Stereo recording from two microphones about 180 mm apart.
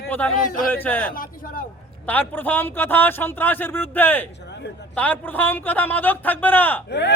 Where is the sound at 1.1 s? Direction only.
50° left (ahead or behind).